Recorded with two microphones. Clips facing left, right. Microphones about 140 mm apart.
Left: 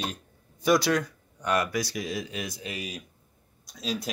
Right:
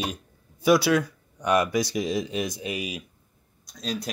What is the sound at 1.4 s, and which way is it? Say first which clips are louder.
Speech: right 4 dB; 20° right (ahead or behind).